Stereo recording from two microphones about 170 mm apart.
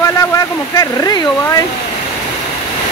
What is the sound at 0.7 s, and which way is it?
Speech, 20° left (ahead or behind).